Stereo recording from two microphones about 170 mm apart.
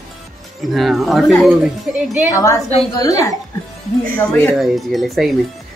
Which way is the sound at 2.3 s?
20° left (ahead or behind).